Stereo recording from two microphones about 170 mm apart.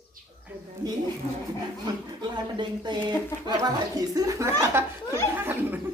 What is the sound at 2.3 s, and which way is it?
Speech, 25° right (ahead or behind).